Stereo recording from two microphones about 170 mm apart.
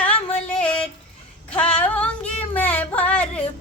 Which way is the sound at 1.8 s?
10° left (ahead or behind).